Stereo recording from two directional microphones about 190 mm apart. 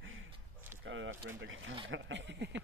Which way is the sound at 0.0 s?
90° right.